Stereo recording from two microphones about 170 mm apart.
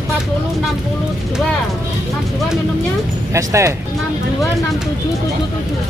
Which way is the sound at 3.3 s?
20° right (ahead or behind).